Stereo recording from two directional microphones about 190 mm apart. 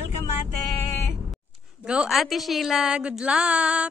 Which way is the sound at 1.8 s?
5° right (ahead or behind).